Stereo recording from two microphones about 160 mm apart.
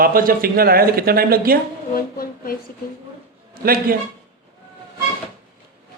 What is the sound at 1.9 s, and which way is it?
Speech, 65° left (ahead or behind).